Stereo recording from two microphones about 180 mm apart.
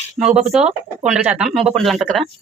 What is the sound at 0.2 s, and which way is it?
Speech, 5° right (ahead or behind).